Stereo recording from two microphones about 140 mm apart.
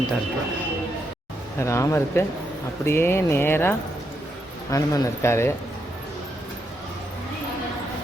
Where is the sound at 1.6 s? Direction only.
20° left (ahead or behind).